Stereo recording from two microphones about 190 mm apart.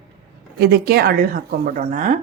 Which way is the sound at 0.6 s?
55° right (ahead or behind).